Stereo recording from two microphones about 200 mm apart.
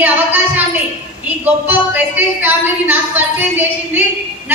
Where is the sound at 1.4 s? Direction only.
10° right (ahead or behind).